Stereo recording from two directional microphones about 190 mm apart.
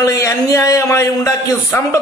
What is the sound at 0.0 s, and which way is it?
A man's voice, 20° left (ahead or behind).